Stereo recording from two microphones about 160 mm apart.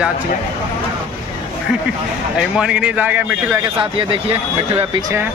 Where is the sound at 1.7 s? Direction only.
5° right (ahead or behind).